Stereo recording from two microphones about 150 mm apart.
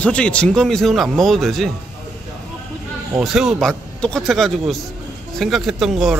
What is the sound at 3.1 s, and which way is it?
A man's voice, 5° right (ahead or behind).